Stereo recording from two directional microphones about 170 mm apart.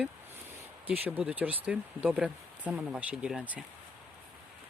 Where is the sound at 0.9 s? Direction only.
10° right (ahead or behind).